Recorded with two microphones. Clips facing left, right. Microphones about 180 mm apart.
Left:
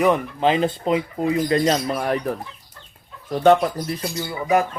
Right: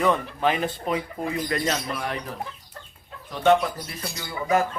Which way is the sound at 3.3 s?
40° left (ahead or behind).